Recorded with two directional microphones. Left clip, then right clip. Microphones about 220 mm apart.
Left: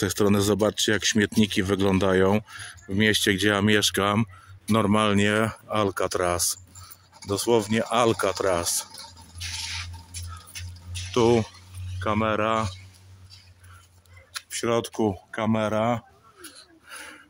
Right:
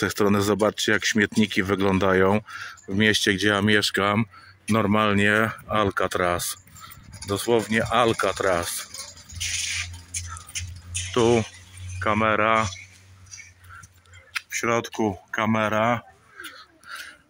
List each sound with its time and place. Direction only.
0.0 s speech: 10° left (ahead or behind)
9.4 s a sound: 45° right (ahead or behind)
11.1 s speech: centre (ahead or behind)
15.0 s speech: 10° left (ahead or behind)